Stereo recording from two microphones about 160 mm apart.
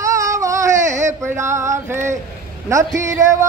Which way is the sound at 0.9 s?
50° right (ahead or behind).